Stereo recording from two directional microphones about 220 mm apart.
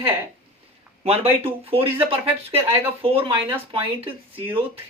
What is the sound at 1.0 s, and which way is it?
Speech, 30° right (ahead or behind).